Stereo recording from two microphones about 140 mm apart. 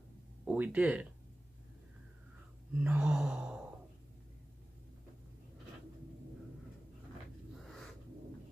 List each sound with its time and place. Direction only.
0.5 s speech: 10° right (ahead or behind)
2.8 s sigh: 10° right (ahead or behind)
7.5 s a sound: centre (ahead or behind)